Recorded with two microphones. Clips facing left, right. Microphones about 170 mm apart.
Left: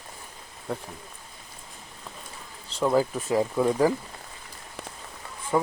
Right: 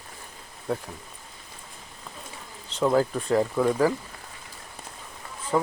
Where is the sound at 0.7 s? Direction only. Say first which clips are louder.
Right 4 dB; centre (ahead or behind).